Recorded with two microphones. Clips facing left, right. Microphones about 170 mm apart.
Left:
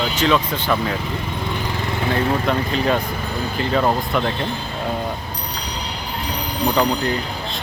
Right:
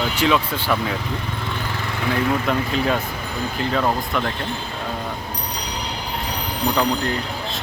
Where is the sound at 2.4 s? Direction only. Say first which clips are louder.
Left 1 dB; 5° right (ahead or behind).